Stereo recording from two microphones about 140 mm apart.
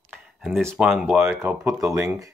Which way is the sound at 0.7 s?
5° right (ahead or behind).